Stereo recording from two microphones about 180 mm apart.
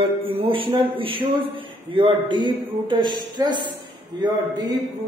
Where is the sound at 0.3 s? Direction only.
30° right (ahead or behind).